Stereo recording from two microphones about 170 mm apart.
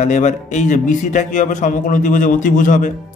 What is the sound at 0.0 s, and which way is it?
A man's voice, 45° left (ahead or behind).